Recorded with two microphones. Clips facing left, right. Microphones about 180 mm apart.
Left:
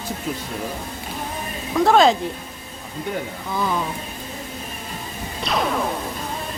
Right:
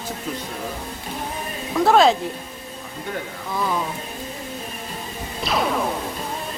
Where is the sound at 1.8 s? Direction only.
Centre (ahead or behind).